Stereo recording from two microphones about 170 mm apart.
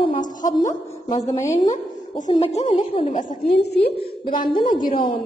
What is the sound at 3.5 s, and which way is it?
Speech, 75° left (ahead or behind).